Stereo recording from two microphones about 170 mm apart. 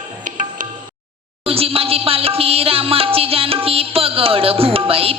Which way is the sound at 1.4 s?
35° right (ahead or behind).